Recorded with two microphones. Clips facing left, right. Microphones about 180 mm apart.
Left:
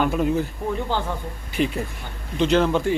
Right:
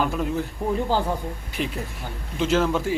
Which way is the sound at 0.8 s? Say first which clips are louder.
Right 2 dB; 40° right (ahead or behind).